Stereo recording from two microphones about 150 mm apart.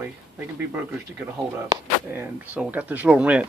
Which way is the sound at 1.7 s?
15° right (ahead or behind).